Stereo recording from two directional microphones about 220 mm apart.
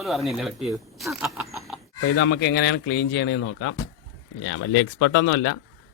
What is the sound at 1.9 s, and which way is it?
Speech, 50° left (ahead or behind).